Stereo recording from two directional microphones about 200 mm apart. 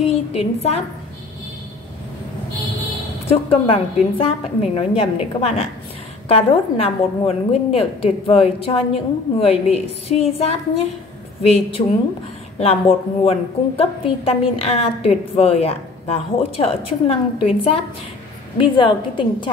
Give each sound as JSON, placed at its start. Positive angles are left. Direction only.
{"t": 0.0, "sound": "a woman's voice", "side_deg": 30}
{"t": 3.3, "sound": "a woman's voice", "side_deg": 25}